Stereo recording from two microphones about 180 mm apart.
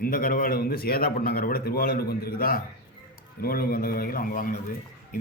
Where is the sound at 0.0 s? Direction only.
50° left (ahead or behind).